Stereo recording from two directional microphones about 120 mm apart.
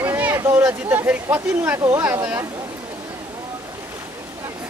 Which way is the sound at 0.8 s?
15° right (ahead or behind).